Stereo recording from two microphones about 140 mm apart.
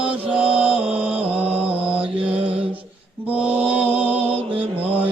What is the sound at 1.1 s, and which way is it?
Mantra, 10° right (ahead or behind).